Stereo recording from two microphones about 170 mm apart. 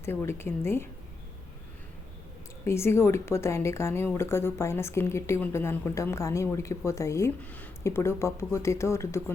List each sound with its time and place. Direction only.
0.0 s a woman's voice: 15° left (ahead or behind)
2.6 s a woman's voice: 15° left (ahead or behind)